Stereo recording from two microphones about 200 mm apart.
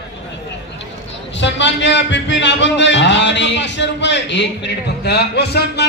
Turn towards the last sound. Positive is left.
turn(degrees=55)  # may be behind; listen again after turning